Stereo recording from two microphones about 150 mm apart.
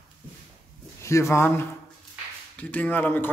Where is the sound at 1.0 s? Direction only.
20° left (ahead or behind).